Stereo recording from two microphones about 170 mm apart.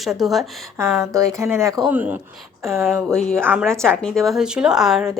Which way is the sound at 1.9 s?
10° right (ahead or behind).